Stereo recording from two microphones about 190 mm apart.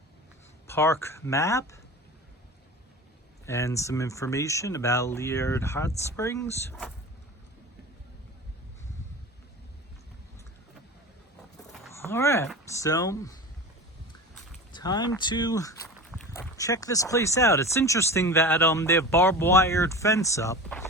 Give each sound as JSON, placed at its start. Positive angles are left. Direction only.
{"t": 0.7, "sound": "speech", "side_deg": 10}
{"t": 3.4, "sound": "speech", "side_deg": 15}
{"t": 11.9, "sound": "speech", "side_deg": 10}
{"t": 14.7, "sound": "speech", "side_deg": 20}
{"t": 16.1, "sound": "a sound", "side_deg": 5}
{"t": 16.6, "sound": "speech", "side_deg": 15}